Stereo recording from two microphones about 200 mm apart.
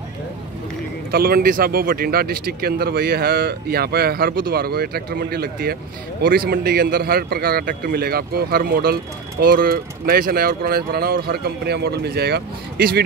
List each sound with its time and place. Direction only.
1.1 s a man's voice: 50° right (ahead or behind)